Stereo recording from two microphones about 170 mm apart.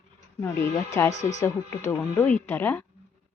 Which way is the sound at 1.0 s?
15° left (ahead or behind).